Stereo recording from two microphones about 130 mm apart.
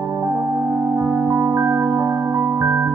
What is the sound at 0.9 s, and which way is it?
Music, 15° right (ahead or behind).